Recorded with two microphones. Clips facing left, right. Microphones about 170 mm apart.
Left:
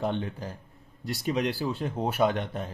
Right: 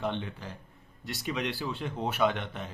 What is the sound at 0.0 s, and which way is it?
Speech, 35° left (ahead or behind).